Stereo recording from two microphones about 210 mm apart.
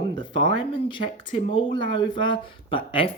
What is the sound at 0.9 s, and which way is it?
Speech, 20° left (ahead or behind).